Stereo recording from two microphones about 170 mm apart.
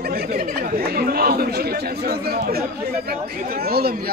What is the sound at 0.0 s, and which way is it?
Speech, 65° right (ahead or behind).